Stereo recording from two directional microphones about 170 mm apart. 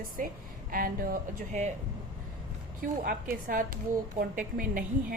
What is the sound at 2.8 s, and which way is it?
A woman's voice, 60° right (ahead or behind).